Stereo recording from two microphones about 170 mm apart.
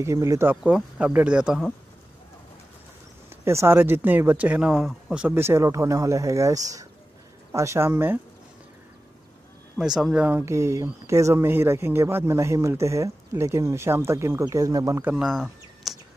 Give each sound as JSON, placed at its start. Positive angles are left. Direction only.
{"t": 0.0, "sound": "speech", "side_deg": -15}
{"t": 3.4, "sound": "speech", "side_deg": -15}
{"t": 9.8, "sound": "speech", "side_deg": -5}